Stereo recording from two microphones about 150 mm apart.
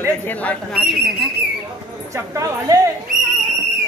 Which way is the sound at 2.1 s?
20° right (ahead or behind).